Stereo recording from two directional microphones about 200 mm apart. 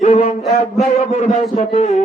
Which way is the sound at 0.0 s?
30° left (ahead or behind).